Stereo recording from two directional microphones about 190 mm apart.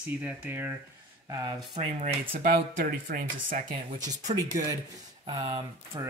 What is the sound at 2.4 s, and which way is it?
Speech, 50° right (ahead or behind).